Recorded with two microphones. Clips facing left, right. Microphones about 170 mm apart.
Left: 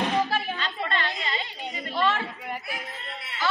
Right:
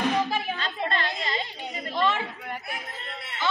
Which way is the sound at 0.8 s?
40° right (ahead or behind).